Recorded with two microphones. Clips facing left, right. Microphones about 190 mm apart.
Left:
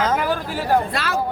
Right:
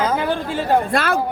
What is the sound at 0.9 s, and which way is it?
Speech, 50° right (ahead or behind).